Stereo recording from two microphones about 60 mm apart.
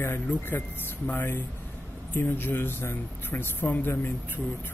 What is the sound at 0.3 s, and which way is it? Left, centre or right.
Speech, left.